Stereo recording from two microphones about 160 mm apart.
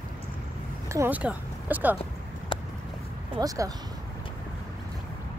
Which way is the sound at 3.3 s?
20° right (ahead or behind).